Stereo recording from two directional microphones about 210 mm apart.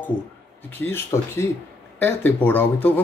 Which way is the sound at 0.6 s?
10° left (ahead or behind).